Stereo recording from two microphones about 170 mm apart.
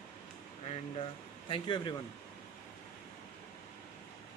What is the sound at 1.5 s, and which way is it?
Speech, 30° left (ahead or behind).